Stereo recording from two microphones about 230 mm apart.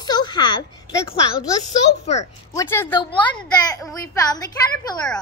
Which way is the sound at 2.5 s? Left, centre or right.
Centre.